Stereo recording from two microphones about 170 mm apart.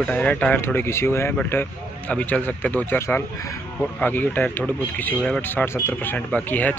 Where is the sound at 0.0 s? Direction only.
5° left (ahead or behind).